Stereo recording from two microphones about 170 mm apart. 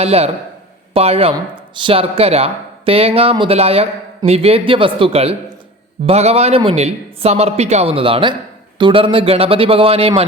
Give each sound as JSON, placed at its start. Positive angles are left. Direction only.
{"t": 0.0, "sound": "speech", "side_deg": -35}